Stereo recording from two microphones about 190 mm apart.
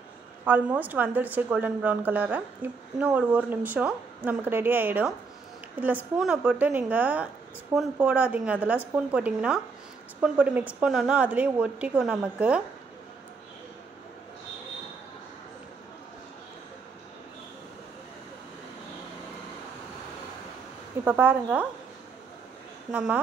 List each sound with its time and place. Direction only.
0.5 s a woman's voice: 10° right (ahead or behind)
21.0 s a woman's voice: 10° right (ahead or behind)
22.8 s a woman's voice: 5° right (ahead or behind)